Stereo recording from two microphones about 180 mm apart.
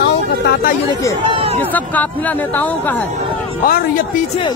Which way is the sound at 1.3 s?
30° right (ahead or behind).